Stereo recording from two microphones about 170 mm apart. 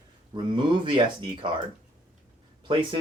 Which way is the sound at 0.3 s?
30° right (ahead or behind).